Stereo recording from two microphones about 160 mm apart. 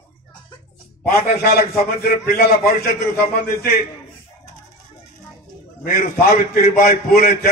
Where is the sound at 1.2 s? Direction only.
65° left (ahead or behind).